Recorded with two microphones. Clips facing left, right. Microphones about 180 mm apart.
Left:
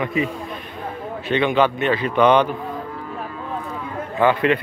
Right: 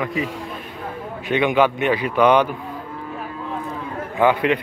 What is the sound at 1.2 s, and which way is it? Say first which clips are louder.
Speech: right 1 dB; 10° right (ahead or behind).